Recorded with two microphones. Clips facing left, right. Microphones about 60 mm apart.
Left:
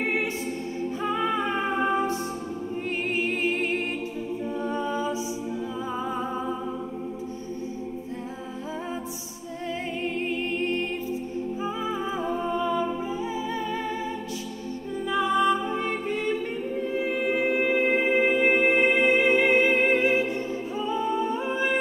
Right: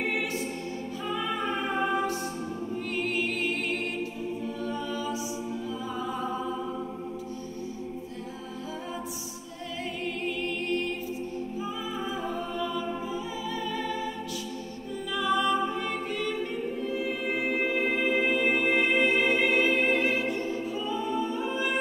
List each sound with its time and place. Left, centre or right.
0.0 s choir: left
1.0 s music: left
4.6 s a capella: left
10.0 s a capella: left
11.6 s music: left
15.0 s music: left
20.9 s humming: left